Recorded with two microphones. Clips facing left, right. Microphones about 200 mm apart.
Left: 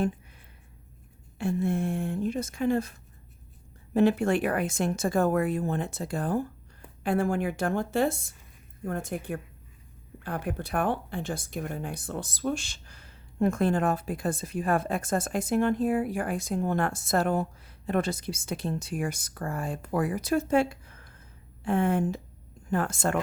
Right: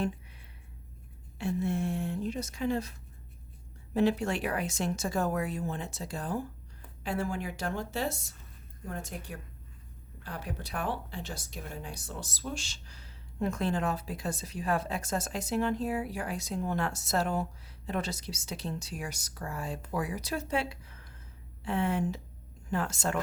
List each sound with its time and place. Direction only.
1.4 s speech: 50° left (ahead or behind)
3.9 s speech: 55° left (ahead or behind)